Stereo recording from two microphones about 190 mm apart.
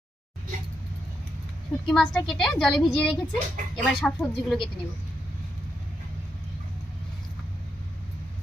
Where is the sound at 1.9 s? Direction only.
Centre (ahead or behind).